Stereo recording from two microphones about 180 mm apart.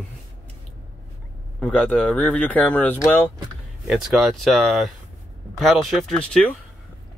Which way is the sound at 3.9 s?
Centre (ahead or behind).